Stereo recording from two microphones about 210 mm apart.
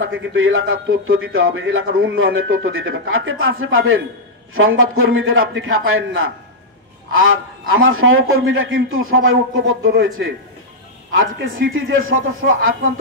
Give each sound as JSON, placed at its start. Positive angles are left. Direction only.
{"t": 0.0, "sound": "a man's voice", "side_deg": -65}